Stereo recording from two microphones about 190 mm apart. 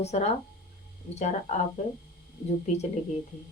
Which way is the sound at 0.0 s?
35° left (ahead or behind).